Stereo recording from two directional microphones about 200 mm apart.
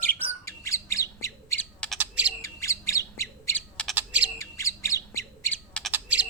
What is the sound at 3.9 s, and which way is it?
Bird, 5° right (ahead or behind).